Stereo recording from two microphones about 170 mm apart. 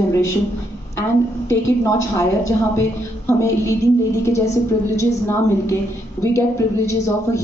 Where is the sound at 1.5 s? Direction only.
15° left (ahead or behind).